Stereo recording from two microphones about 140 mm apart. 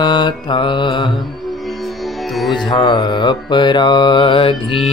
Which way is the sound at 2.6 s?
30° left (ahead or behind).